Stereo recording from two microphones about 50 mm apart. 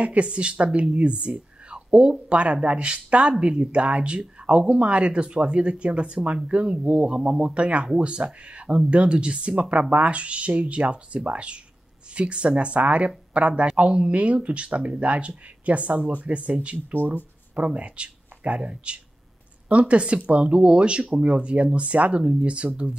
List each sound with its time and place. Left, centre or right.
0.0 s speech: right
17.6 s speech: right